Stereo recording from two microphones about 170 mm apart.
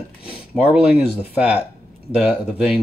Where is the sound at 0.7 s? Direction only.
5° right (ahead or behind).